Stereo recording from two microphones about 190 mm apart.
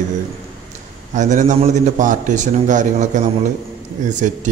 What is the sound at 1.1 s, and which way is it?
A man's voice, 40° right (ahead or behind).